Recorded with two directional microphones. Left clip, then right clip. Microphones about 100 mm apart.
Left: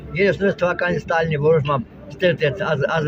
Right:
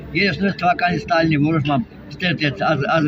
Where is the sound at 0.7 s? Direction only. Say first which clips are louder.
Right 3 dB; 40° left (ahead or behind).